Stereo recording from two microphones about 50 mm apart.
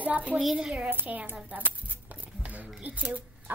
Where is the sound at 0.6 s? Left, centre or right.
Centre.